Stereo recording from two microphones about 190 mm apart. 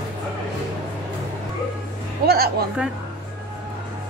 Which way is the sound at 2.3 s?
55° right (ahead or behind).